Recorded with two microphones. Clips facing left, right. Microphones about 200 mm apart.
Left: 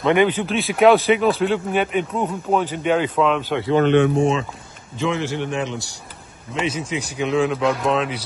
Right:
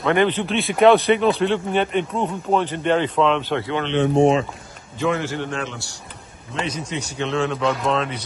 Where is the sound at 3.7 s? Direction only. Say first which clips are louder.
Left 7 dB; 50° left (ahead or behind).